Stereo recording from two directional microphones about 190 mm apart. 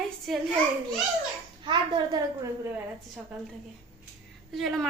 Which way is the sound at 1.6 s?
25° right (ahead or behind).